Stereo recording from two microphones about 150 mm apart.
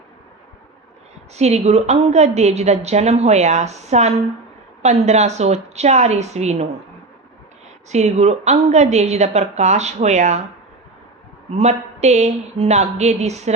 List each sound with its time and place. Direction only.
1.4 s a woman's voice: 45° right (ahead or behind)
7.9 s a woman's voice: 50° right (ahead or behind)
11.5 s a woman's voice: 50° right (ahead or behind)